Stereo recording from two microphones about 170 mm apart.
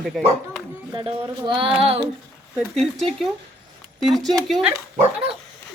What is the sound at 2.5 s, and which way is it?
Speech, centre (ahead or behind).